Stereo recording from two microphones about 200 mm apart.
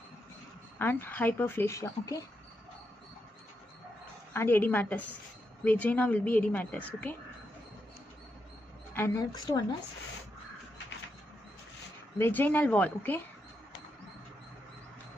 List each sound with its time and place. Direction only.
0.7 s a woman's voice: 10° left (ahead or behind)
4.3 s a woman's voice: 10° left (ahead or behind)
8.9 s a woman's voice: 15° left (ahead or behind)
12.2 s a woman's voice: 10° left (ahead or behind)